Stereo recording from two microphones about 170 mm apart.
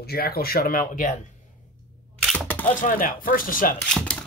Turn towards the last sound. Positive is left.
turn(degrees=5)  # may be behind; listen again after turning